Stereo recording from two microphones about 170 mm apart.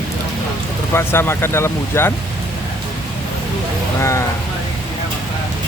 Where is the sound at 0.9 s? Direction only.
15° left (ahead or behind).